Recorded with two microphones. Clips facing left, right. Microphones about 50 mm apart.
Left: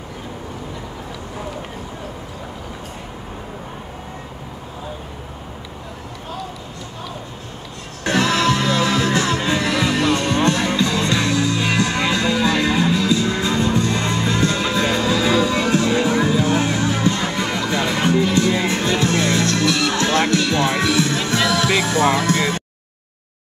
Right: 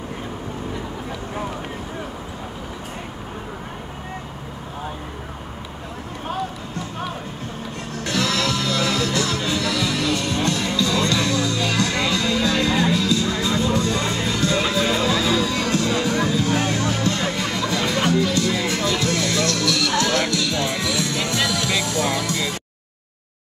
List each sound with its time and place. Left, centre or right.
8.0 s music: left